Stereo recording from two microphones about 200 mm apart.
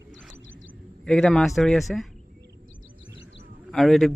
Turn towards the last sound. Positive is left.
turn(degrees=0)  # may be behind; listen again after turning